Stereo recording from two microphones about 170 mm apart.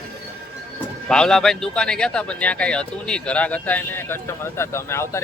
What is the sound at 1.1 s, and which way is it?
Speech, 5° left (ahead or behind).